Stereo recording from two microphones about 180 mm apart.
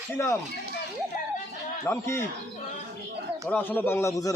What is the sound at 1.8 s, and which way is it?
Speech, 15° left (ahead or behind).